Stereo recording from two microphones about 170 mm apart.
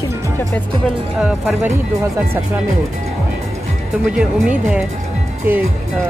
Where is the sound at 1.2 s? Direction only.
5° right (ahead or behind).